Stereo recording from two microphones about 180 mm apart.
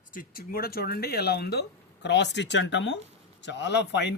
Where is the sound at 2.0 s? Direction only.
75° left (ahead or behind).